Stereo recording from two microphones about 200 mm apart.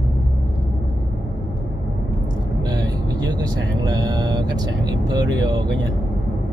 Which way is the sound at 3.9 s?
20° right (ahead or behind).